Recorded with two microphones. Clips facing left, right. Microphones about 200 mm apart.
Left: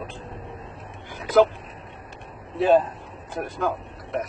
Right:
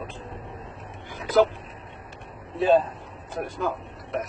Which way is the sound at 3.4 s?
Centre (ahead or behind).